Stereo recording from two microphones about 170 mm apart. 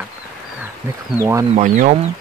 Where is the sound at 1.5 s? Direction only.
45° right (ahead or behind).